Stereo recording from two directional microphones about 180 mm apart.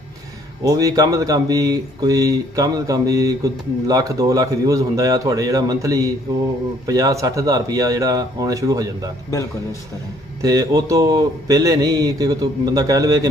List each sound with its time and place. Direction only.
0.7 s speech: 20° right (ahead or behind)
10.4 s speech: 20° right (ahead or behind)